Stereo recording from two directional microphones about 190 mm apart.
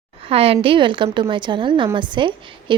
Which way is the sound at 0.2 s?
30° right (ahead or behind).